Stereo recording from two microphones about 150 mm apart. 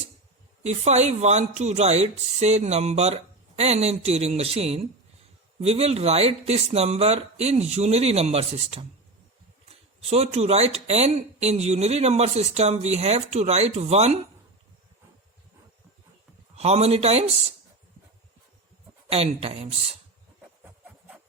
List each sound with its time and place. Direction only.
0.6 s speech: 50° right (ahead or behind)
16.6 s speech: 45° right (ahead or behind)
19.1 s speech: 40° right (ahead or behind)